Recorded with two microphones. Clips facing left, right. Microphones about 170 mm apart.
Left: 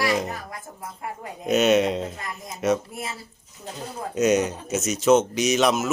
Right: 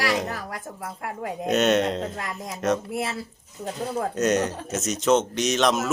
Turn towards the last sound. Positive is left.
turn(degrees=5)  # may be behind; listen again after turning